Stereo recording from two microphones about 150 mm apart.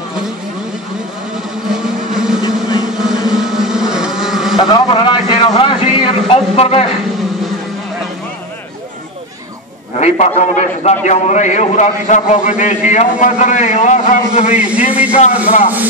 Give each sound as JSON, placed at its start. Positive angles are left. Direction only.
{"t": 2.1, "sound": "vehicle", "side_deg": -5}
{"t": 4.7, "sound": "a sound", "side_deg": 30}
{"t": 9.9, "sound": "a man's voice", "side_deg": 50}
{"t": 14.5, "sound": "a man's voice", "side_deg": -10}